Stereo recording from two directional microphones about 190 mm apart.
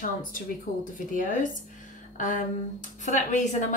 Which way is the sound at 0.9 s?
45° left (ahead or behind).